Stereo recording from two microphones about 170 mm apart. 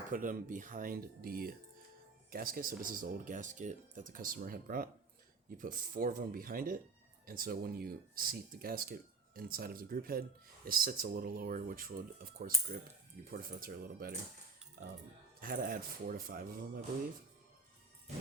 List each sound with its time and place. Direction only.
0.1 s speech: 50° right (ahead or behind)